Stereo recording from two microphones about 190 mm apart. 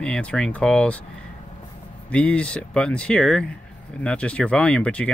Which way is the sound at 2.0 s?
5° left (ahead or behind).